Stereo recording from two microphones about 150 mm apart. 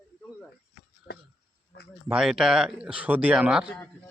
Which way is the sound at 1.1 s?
90° left.